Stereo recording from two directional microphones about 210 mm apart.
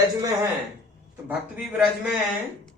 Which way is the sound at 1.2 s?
5° right (ahead or behind).